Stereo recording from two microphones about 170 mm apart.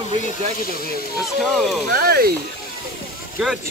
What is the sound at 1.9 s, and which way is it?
Speech, 60° right (ahead or behind).